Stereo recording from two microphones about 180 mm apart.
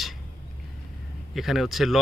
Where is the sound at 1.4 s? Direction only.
Centre (ahead or behind).